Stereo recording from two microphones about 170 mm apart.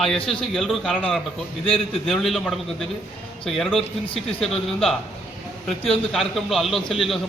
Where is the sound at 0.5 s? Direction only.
Centre (ahead or behind).